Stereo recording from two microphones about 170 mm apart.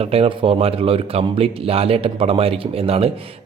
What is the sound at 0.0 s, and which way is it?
Speech, 35° right (ahead or behind).